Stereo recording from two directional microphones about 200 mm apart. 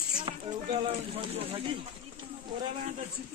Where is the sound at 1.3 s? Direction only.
30° right (ahead or behind).